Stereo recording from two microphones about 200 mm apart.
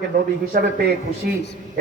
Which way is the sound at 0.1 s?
45° right (ahead or behind).